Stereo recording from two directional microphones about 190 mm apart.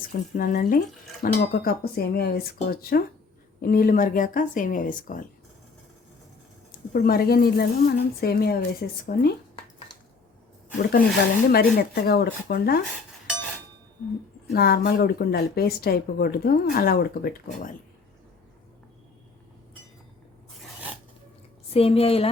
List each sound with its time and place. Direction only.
0.3 s speech: 50° left (ahead or behind)
6.7 s speech: 50° left (ahead or behind)
10.8 s speech: 50° left (ahead or behind)
14.5 s speech: 55° left (ahead or behind)
21.7 s speech: 30° left (ahead or behind)